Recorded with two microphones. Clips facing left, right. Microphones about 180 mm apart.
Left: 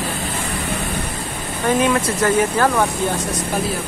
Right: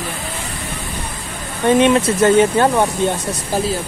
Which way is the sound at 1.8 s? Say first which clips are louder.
Right 6 dB; 25° right (ahead or behind).